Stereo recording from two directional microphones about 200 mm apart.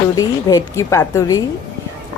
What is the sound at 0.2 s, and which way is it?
A woman's voice, 15° left (ahead or behind).